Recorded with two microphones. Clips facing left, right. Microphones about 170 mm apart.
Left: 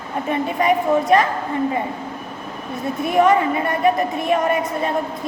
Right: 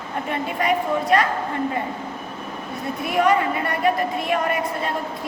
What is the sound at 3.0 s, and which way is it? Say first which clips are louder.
A woman's voice: left 4 dB; 25° left (ahead or behind).